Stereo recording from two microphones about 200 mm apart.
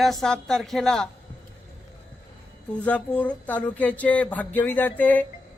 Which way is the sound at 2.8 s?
5° left (ahead or behind).